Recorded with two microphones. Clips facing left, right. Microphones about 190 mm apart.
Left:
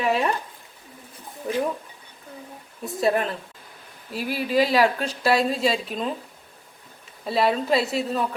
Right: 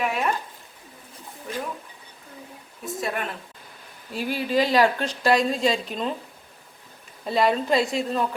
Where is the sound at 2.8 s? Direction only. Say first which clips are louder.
Left 7 dB; 35° left (ahead or behind).